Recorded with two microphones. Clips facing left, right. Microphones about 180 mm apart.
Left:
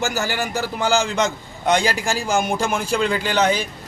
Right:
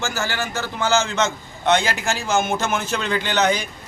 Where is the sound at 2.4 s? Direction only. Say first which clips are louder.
Right 1 dB; 10° left (ahead or behind).